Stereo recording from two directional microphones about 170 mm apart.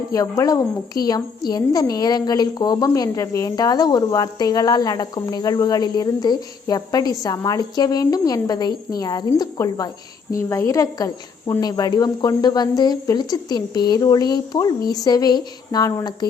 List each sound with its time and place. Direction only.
0.1 s a woman's voice: 20° left (ahead or behind)